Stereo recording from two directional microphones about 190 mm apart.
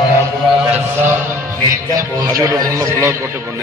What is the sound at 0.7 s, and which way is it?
A man's voice, 10° right (ahead or behind).